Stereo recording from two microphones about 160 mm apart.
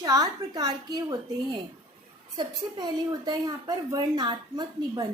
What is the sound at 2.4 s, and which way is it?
A woman's voice, 25° right (ahead or behind).